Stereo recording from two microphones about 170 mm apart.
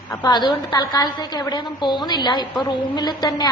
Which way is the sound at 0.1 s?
25° left (ahead or behind).